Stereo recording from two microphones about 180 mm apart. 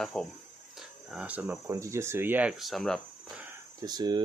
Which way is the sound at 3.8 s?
25° right (ahead or behind).